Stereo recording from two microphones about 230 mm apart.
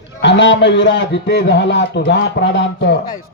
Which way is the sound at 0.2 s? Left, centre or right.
Left.